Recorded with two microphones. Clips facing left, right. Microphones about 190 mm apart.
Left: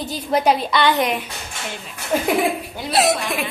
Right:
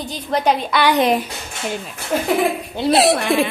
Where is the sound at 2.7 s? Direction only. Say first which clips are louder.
Right 6 dB; 35° right (ahead or behind).